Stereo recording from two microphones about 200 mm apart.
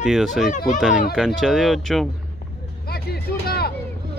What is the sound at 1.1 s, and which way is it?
Speech, centre (ahead or behind).